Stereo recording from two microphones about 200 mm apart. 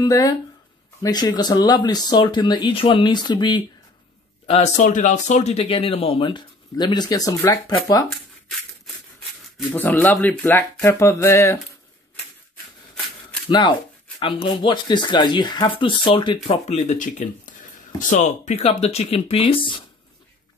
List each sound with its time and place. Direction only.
0.0 s speech: 15° left (ahead or behind)
4.5 s speech: 35° left (ahead or behind); by 8.0 s 20° left (ahead or behind)
9.7 s speech: 10° left (ahead or behind)
13.5 s speech: 25° left (ahead or behind)